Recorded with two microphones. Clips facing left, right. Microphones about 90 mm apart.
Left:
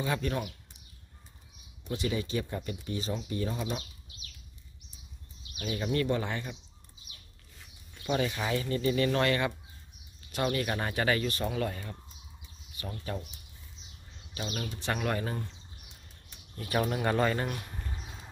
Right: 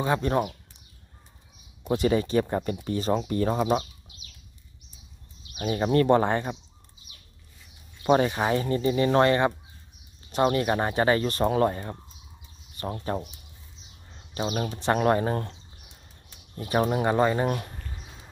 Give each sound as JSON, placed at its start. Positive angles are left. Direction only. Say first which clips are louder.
{"t": 0.0, "sound": "speech", "louder": "right 7 dB", "side_deg": -35}
{"t": 2.0, "sound": "speech", "louder": "right 9 dB", "side_deg": -50}
{"t": 5.6, "sound": "speech", "louder": "right 8 dB", "side_deg": -45}
{"t": 8.0, "sound": "speech", "louder": "right 9 dB", "side_deg": -50}
{"t": 14.1, "sound": "bird", "louder": "right 9 dB", "side_deg": -45}
{"t": 14.7, "sound": "speech", "louder": "right 10 dB", "side_deg": -35}
{"t": 16.5, "sound": "speech", "louder": "right 6 dB", "side_deg": -25}
{"t": 17.9, "sound": "a sound", "louder": "left 1 dB", "side_deg": -5}